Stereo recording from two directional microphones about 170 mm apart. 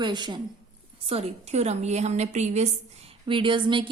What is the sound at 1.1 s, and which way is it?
A woman's voice, 35° right (ahead or behind).